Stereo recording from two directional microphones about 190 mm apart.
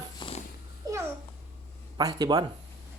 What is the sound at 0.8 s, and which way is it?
Babbling, 20° right (ahead or behind).